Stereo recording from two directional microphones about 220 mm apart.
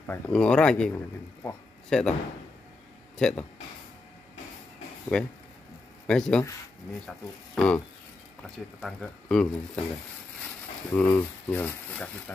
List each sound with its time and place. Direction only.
0.0 s speech: 5° left (ahead or behind)
3.2 s speech: 5° left (ahead or behind)
5.1 s speech: 5° left (ahead or behind)
11.0 s speech: 10° left (ahead or behind)